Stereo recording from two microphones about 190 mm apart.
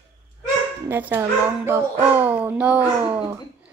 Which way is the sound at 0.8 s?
10° right (ahead or behind).